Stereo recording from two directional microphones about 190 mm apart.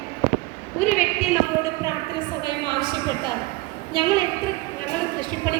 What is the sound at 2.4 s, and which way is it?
A woman's voice, 25° right (ahead or behind).